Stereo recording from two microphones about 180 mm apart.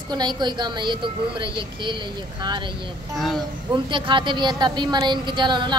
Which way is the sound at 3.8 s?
25° right (ahead or behind).